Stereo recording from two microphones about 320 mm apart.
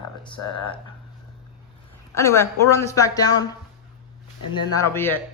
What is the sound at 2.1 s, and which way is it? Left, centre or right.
Speech, centre.